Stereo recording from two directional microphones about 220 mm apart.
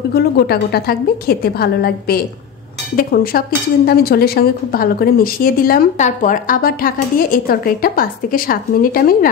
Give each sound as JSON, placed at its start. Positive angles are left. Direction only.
{"t": 0.1, "sound": "a woman's voice", "side_deg": 45}